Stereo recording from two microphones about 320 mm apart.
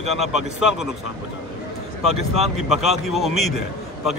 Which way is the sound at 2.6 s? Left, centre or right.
Centre.